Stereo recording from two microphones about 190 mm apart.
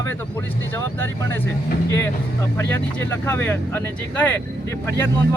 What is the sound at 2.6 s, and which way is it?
Speech, 10° left (ahead or behind).